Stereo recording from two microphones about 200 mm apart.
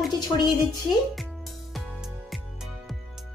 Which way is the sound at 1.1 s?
Centre (ahead or behind).